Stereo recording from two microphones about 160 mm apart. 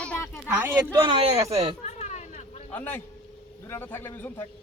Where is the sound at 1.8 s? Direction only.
45° left (ahead or behind).